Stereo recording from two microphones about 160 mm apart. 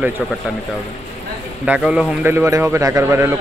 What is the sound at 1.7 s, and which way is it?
Speech, 10° right (ahead or behind).